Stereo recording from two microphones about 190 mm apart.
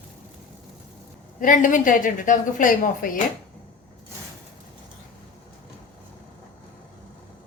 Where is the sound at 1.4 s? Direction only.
45° left (ahead or behind).